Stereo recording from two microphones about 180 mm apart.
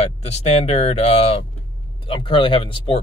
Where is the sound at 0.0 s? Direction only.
35° left (ahead or behind).